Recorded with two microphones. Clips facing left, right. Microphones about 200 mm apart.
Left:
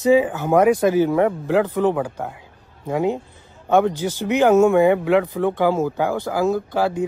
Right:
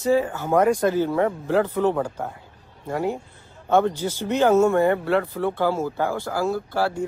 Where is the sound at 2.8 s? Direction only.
20° left (ahead or behind).